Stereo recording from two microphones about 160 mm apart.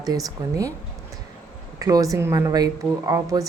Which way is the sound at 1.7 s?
20° right (ahead or behind).